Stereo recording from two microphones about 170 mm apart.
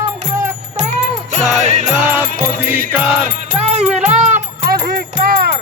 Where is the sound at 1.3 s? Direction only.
45° right (ahead or behind).